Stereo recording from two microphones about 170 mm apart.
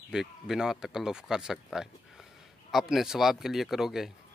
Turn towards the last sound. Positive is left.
turn(degrees=0)  # may be behind; listen again after turning